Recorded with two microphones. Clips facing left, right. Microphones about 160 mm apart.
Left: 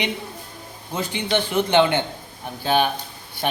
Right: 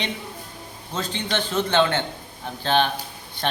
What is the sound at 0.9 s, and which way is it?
Speech, 10° left (ahead or behind).